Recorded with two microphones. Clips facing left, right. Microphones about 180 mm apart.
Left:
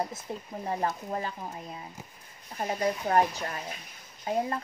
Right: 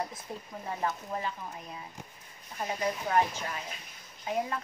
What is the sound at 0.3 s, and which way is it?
A woman's voice, 30° left (ahead or behind).